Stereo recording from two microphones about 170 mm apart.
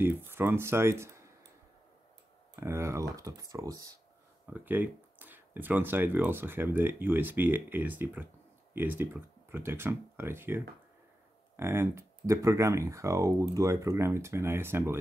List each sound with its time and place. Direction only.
0.0 s speech: 15° right (ahead or behind)
2.5 s speech: 15° right (ahead or behind)